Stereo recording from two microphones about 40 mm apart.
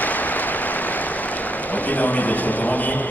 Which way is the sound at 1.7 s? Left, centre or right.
Left.